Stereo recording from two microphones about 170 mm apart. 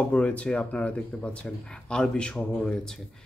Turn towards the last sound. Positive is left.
turn(degrees=5)  # may be behind; listen again after turning